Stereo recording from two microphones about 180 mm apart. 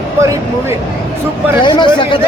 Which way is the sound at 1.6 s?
25° left (ahead or behind).